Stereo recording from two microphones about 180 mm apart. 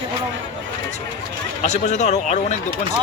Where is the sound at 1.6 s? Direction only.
40° left (ahead or behind).